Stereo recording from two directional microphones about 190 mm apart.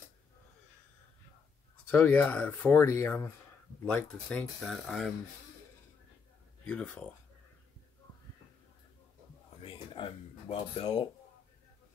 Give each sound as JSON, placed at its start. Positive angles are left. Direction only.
{"t": 1.9, "sound": "speech", "side_deg": 10}
{"t": 6.6, "sound": "speech", "side_deg": 5}
{"t": 9.6, "sound": "a sound", "side_deg": 25}